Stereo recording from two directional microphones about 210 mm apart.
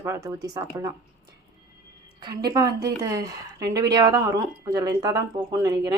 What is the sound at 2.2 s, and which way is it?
A woman's voice, 20° right (ahead or behind).